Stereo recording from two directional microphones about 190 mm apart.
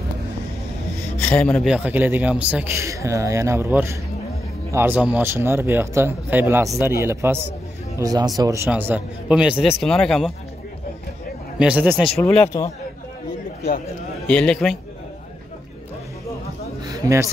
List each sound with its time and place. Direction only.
1.2 s a man's voice: 5° left (ahead or behind)
11.5 s a man's voice: 5° right (ahead or behind)
12.2 s speech: 5° left (ahead or behind)
14.2 s a man's voice: 5° left (ahead or behind)
16.8 s a sound: 20° right (ahead or behind)